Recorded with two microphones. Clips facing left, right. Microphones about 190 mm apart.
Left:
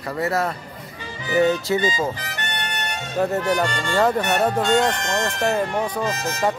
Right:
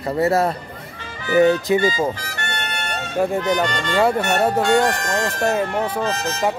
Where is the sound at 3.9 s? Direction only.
10° right (ahead or behind).